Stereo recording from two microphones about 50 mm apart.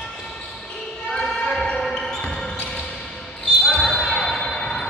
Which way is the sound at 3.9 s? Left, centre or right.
Centre.